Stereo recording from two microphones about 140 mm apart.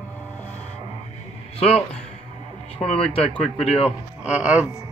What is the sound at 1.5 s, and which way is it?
A man's voice, 45° left (ahead or behind).